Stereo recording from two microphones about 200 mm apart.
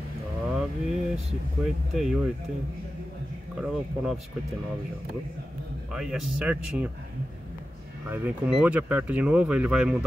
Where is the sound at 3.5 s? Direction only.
5° right (ahead or behind).